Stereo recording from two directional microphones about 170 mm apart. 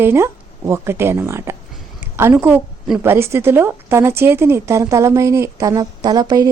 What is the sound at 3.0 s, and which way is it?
A woman's voice, 15° right (ahead or behind).